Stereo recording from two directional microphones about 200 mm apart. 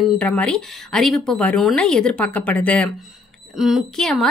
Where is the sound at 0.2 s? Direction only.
5° left (ahead or behind).